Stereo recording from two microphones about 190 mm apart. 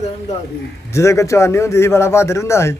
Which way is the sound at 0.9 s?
15° left (ahead or behind).